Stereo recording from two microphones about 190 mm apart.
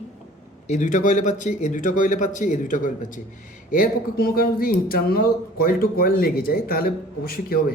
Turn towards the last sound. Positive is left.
turn(degrees=50)  # may be behind; listen again after turning